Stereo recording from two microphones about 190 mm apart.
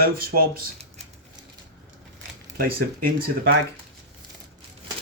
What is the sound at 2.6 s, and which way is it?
Speech, 50° right (ahead or behind).